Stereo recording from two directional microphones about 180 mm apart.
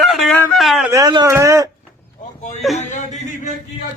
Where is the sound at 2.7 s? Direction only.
40° left (ahead or behind).